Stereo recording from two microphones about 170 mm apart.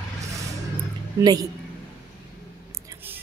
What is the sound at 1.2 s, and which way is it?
Speech, 20° right (ahead or behind).